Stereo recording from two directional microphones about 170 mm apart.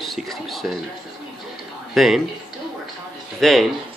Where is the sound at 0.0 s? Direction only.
Centre (ahead or behind).